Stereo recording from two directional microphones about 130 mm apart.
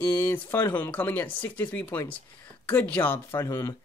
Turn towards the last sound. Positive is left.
turn(degrees=25)  # may be behind; listen again after turning